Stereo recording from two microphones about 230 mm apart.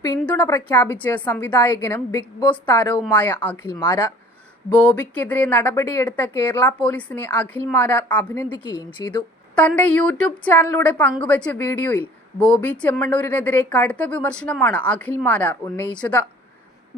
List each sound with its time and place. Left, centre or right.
0.3 s speech: centre
8.4 s a woman's voice: centre
9.6 s speech: centre